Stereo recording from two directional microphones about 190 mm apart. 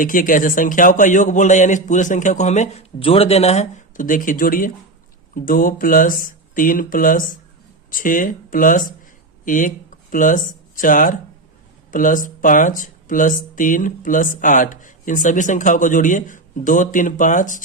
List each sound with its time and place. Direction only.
0.0 s speech: 45° left (ahead or behind)